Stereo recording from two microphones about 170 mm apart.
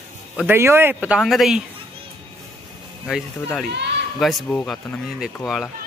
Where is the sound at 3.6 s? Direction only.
85° right.